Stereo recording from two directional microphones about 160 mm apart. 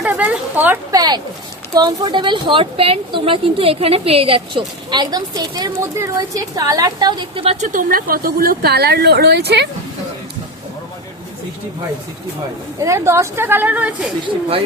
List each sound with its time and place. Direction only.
0.1 s speech: 10° right (ahead or behind)
0.9 s a woman's voice: 25° right (ahead or behind)
7.5 s a woman's voice: 50° right (ahead or behind); by 9.6 s 90° right
12.8 s a woman's voice: 20° right (ahead or behind)